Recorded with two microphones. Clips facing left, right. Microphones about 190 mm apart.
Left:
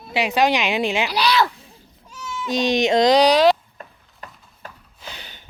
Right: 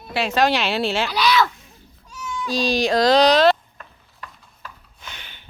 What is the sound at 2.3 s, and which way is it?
Speech, 20° left (ahead or behind).